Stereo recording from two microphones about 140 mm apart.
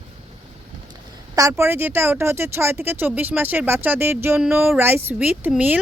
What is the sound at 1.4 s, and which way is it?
A woman's voice, 20° right (ahead or behind).